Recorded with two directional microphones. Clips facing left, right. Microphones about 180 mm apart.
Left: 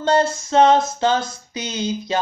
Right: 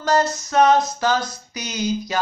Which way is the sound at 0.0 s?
30° left (ahead or behind).